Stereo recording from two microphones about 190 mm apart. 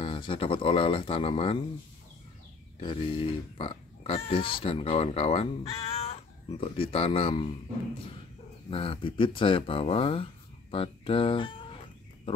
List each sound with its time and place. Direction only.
0.0 s speech: 25° left (ahead or behind)
2.8 s speech: 25° left (ahead or behind)
8.6 s speech: 30° left (ahead or behind)